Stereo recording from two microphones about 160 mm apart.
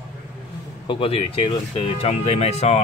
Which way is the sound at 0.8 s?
35° left (ahead or behind).